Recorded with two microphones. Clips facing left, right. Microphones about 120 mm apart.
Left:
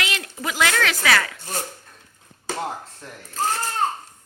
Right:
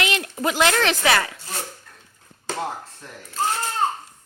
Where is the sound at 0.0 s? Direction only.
25° right (ahead or behind).